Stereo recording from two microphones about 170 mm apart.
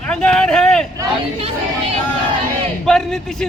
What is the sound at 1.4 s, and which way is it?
Speech, 35° right (ahead or behind).